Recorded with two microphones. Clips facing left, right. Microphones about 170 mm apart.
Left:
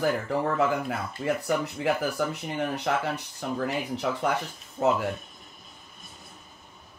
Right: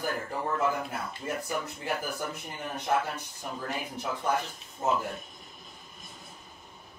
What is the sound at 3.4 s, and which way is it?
Speech, 90° left.